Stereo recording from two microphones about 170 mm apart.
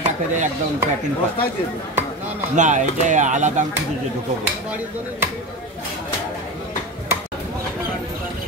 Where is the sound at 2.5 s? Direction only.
45° right (ahead or behind).